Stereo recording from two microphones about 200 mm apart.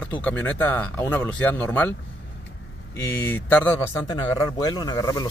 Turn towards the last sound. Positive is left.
turn(degrees=20)  # may be behind; listen again after turning